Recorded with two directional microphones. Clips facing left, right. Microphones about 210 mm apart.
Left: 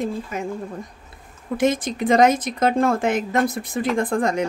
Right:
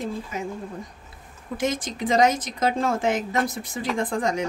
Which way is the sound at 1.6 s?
55° left (ahead or behind).